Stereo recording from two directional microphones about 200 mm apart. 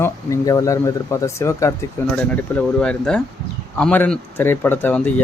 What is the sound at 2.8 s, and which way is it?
Speech, 5° left (ahead or behind).